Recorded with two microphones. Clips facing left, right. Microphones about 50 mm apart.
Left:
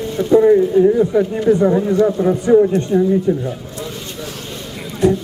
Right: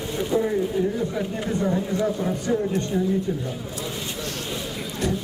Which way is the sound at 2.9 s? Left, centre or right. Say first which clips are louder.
Left 10 dB; centre.